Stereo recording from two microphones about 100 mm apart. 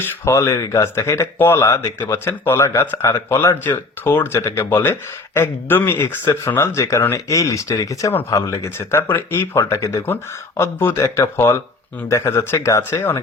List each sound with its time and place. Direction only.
0.3 s speech: 30° left (ahead or behind)